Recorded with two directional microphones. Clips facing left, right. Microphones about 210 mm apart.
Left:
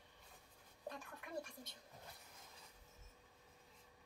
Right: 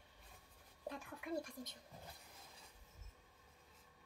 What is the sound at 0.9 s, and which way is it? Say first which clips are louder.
Speech: right 5 dB; 10° right (ahead or behind).